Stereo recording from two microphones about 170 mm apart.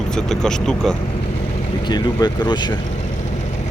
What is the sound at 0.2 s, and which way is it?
Speech, 5° left (ahead or behind).